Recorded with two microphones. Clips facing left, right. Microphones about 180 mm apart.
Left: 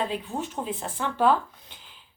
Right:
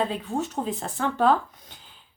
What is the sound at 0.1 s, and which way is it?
Speech, 40° right (ahead or behind).